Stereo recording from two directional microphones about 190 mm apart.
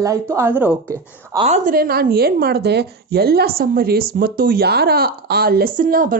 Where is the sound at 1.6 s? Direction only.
50° right (ahead or behind).